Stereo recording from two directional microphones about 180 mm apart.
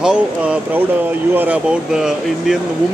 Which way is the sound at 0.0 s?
5° right (ahead or behind).